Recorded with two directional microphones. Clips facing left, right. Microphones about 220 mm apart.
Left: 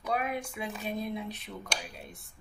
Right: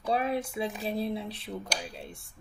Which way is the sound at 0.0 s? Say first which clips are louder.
Right 4 dB; 30° right (ahead or behind).